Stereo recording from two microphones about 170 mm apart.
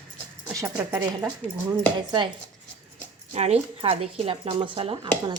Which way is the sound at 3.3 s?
35° right (ahead or behind).